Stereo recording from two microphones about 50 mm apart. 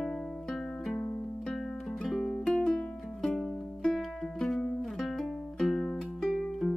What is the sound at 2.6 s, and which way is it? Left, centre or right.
Music, centre.